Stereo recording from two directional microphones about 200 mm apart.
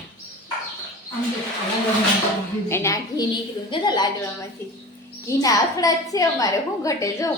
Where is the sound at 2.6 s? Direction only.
15° left (ahead or behind).